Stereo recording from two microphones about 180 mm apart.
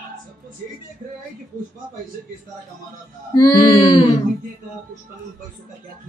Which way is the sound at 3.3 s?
20° left (ahead or behind).